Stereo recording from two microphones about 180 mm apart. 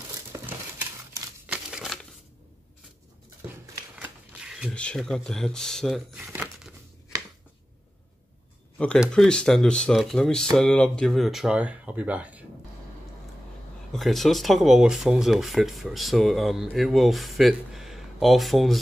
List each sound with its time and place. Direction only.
0.3 s crumpling: 15° right (ahead or behind)
3.9 s shuffling cards: 5° right (ahead or behind)
4.7 s speech: 5° left (ahead or behind)
6.3 s crumpling: 10° right (ahead or behind)
8.7 s speech: 5° left (ahead or behind)
13.9 s speech: centre (ahead or behind)